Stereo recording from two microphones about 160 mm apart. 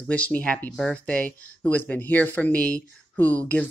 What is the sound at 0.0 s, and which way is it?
Speech, 10° left (ahead or behind).